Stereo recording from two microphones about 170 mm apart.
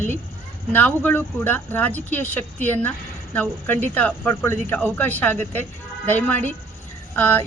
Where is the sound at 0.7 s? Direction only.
10° left (ahead or behind).